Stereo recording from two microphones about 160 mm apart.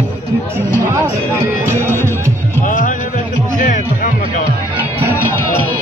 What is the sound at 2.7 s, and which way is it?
Music, 55° left (ahead or behind).